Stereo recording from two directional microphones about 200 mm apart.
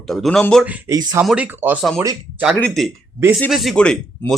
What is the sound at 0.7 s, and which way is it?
Speech, 15° right (ahead or behind).